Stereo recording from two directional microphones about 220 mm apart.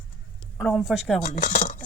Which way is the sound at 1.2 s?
35° left (ahead or behind).